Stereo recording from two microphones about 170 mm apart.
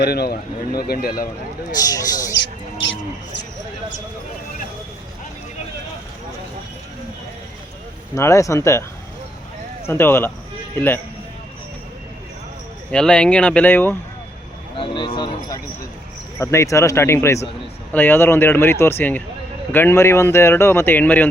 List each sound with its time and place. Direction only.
0.0 s speech: 70° left (ahead or behind)
1.7 s speech: 20° left (ahead or behind)
8.1 s speech: 15° left (ahead or behind)
9.8 s speech: 15° left (ahead or behind)
12.9 s speech: 5° left (ahead or behind)
14.8 s speech: 30° left (ahead or behind); by 21.2 s 10° left (ahead or behind)